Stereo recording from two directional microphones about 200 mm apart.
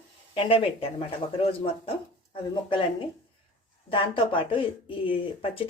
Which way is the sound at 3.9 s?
25° left (ahead or behind).